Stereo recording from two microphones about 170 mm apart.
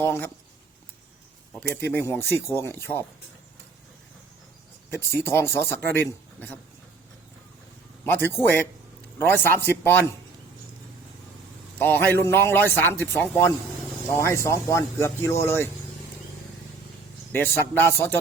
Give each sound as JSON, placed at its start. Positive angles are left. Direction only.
{"t": 0.0, "sound": "speech", "side_deg": 15}
{"t": 1.8, "sound": "speech", "side_deg": 15}
{"t": 4.9, "sound": "speech", "side_deg": 15}
{"t": 8.0, "sound": "speech", "side_deg": 10}
{"t": 11.8, "sound": "speech", "side_deg": 10}
{"t": 17.3, "sound": "speech", "side_deg": 10}